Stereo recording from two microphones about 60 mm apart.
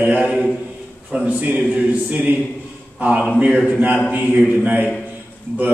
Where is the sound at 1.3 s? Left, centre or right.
Right.